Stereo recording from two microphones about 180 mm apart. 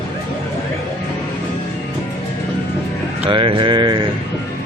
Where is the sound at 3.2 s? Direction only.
30° right (ahead or behind).